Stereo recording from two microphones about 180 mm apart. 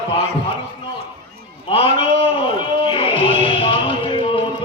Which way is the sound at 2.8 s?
30° left (ahead or behind).